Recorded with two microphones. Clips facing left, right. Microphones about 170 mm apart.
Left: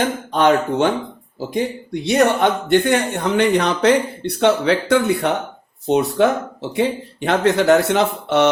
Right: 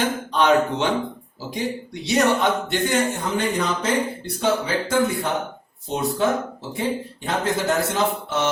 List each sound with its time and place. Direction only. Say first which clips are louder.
0.3 s speech: left 3 dB; 50° left (ahead or behind); by 8.4 s 65° left (ahead or behind)